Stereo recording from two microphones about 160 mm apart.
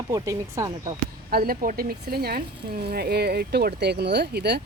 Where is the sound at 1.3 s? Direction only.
65° right (ahead or behind).